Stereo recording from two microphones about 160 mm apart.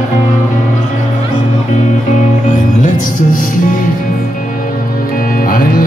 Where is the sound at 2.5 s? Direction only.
55° left (ahead or behind).